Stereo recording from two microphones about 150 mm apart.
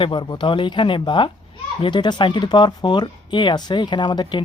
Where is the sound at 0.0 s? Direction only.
35° left (ahead or behind).